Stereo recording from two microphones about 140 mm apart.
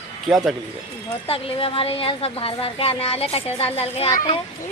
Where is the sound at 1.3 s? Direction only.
40° left (ahead or behind).